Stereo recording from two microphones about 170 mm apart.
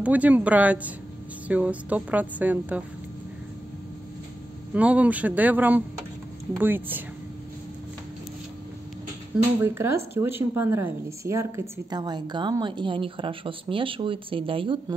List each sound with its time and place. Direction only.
0.0 s a woman's voice: 10° right (ahead or behind)
4.7 s a woman's voice: 10° right (ahead or behind)
9.6 s a woman's voice: 15° right (ahead or behind); by 14.8 s 30° right (ahead or behind)